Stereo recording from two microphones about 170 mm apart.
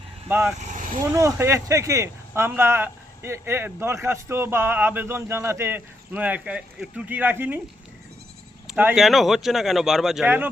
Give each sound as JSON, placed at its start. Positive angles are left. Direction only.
{"t": 0.3, "sound": "speech", "side_deg": -15}
{"t": 8.6, "sound": "speech", "side_deg": -10}